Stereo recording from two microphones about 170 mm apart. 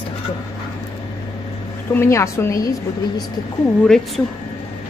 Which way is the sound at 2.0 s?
15° left (ahead or behind).